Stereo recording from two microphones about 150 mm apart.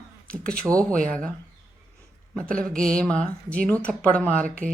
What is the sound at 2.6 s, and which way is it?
Mantra, 5° left (ahead or behind).